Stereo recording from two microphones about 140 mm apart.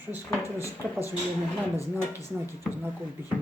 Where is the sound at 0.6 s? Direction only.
20° left (ahead or behind).